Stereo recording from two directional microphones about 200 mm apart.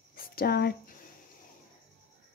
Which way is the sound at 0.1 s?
50° left (ahead or behind).